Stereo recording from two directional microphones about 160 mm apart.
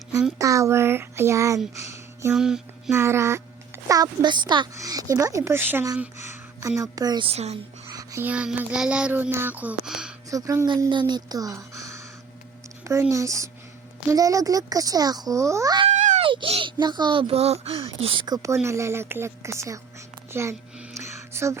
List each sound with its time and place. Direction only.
0.3 s speech: 20° right (ahead or behind)
2.3 s music: 5° right (ahead or behind)
2.9 s music: 15° right (ahead or behind)
3.8 s speech: 25° right (ahead or behind)
7.3 s a child's voice: 40° right (ahead or behind)
7.9 s music: 20° right (ahead or behind); by 10.1 s 5° right (ahead or behind)
10.2 s speech: 20° right (ahead or behind)
15.9 s baby cry: 50° right (ahead or behind)
16.2 s a sound: 30° right (ahead or behind)
16.8 s speech: 25° right (ahead or behind)
20.9 s music: 20° right (ahead or behind)